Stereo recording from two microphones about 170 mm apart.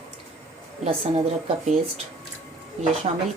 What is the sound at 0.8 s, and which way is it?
Speech, 40° right (ahead or behind).